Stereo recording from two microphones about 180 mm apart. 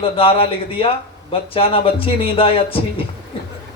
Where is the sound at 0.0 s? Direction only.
30° left (ahead or behind).